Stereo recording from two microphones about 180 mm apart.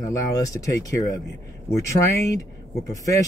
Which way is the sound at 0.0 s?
20° left (ahead or behind).